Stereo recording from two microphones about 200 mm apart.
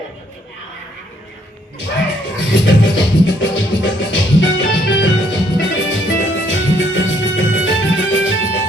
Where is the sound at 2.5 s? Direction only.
70° left (ahead or behind).